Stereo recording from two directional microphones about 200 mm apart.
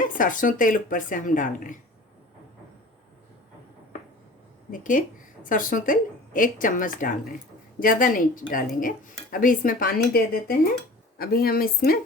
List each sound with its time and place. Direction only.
0.0 s speech: 40° left (ahead or behind)
4.7 s speech: 40° left (ahead or behind)